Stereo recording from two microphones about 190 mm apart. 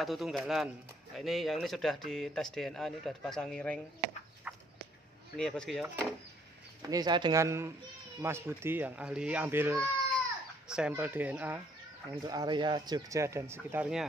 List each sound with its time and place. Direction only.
0.0 s speech: centre (ahead or behind)
4.5 s a sound: 5° right (ahead or behind)
5.4 s speech: 5° left (ahead or behind)
6.9 s speech: 20° right (ahead or behind)
12.2 s speech: 20° right (ahead or behind); by 14.0 s 5° right (ahead or behind)